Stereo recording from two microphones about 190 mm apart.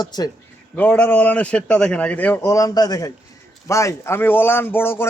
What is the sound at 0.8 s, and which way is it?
A man's voice, 5° left (ahead or behind).